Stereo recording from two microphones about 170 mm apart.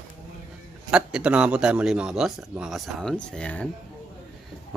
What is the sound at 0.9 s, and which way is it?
A man's voice, 5° right (ahead or behind).